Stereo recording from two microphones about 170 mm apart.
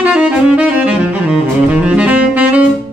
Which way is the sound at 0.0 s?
5° right (ahead or behind).